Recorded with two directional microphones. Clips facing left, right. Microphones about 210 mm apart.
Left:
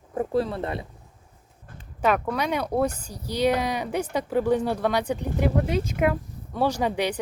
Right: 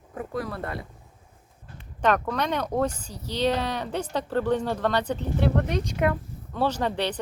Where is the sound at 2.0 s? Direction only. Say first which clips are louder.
Even; 5° left (ahead or behind).